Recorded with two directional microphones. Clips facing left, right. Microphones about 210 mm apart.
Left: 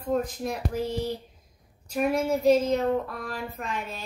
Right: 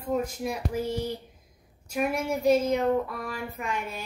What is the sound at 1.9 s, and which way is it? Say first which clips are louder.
A child's voice: left 3 dB; 10° right (ahead or behind).